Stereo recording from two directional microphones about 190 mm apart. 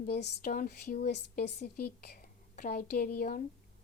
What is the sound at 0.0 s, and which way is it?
A woman's voice, 50° left (ahead or behind).